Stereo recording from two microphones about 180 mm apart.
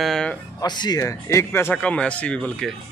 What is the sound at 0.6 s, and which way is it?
Speech, 25° left (ahead or behind).